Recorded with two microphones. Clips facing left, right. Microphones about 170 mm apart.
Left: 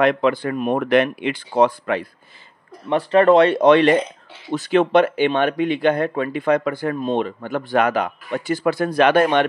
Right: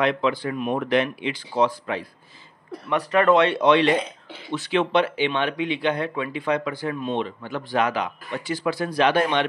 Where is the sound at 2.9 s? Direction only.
30° left (ahead or behind).